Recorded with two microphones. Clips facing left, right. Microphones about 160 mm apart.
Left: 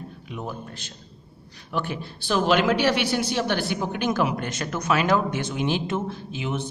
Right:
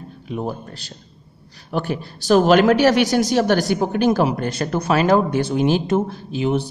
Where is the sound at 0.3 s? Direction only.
35° right (ahead or behind).